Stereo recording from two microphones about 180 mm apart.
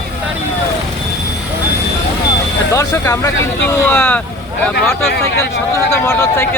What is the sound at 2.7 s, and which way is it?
Speech, 15° left (ahead or behind).